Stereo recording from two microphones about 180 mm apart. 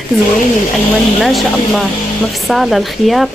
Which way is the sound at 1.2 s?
Centre (ahead or behind).